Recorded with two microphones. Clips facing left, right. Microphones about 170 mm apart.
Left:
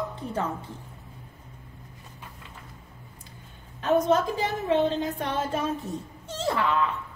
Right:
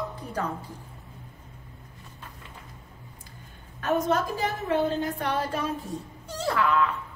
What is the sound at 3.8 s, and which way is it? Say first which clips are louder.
A woman's voice: left 3 dB; 20° left (ahead or behind).